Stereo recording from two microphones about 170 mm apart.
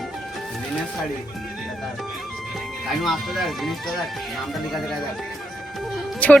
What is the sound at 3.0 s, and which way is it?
Speech, centre (ahead or behind).